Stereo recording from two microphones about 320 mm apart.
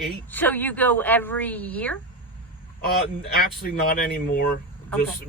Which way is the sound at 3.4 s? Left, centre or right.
Left.